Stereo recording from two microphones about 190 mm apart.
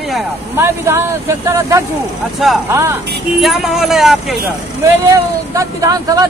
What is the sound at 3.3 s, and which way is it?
Speech, centre (ahead or behind).